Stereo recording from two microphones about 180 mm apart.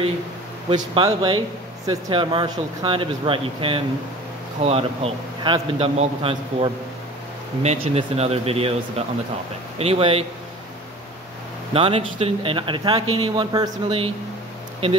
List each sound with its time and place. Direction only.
0.7 s speech: 25° right (ahead or behind)
11.7 s speech: 30° right (ahead or behind)